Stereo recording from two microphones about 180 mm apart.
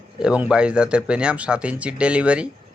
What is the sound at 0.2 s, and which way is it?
Speech, 5° right (ahead or behind).